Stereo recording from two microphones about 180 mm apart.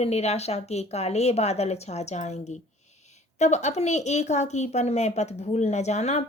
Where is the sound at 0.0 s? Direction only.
35° left (ahead or behind).